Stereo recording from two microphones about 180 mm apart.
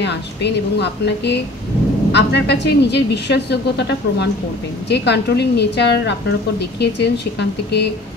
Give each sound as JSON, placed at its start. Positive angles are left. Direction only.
{"t": 0.0, "sound": "a woman's voice", "side_deg": 70}